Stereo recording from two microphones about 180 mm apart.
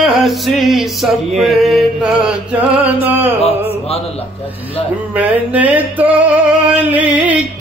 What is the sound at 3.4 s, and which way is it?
Mantra, 35° left (ahead or behind).